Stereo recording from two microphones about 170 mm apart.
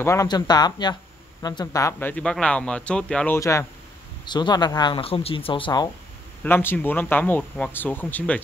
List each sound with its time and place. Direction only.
0.0 s speech: 15° left (ahead or behind)
3.3 s speech: 15° left (ahead or behind)
6.4 s speech: 10° left (ahead or behind)